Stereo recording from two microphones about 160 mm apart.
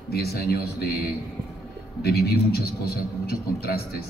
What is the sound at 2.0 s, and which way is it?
Speech, 80° left.